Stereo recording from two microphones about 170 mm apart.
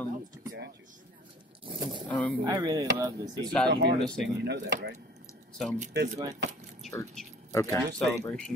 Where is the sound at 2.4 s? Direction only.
25° right (ahead or behind).